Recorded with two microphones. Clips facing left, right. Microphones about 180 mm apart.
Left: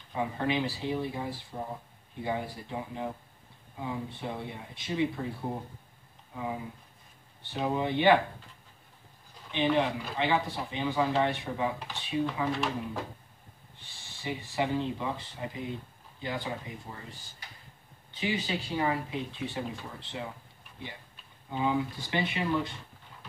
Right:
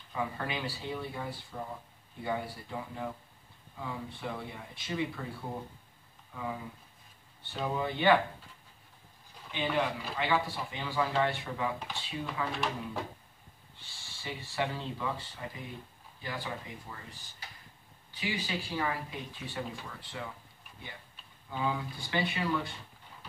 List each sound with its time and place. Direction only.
0.1 s speech: 20° left (ahead or behind)
6.3 s speech: 20° left (ahead or behind)
9.5 s speech: 20° left (ahead or behind)
12.5 s speech: centre (ahead or behind)
13.7 s speech: 20° left (ahead or behind)
18.1 s speech: 25° left (ahead or behind)
21.5 s speech: 20° left (ahead or behind)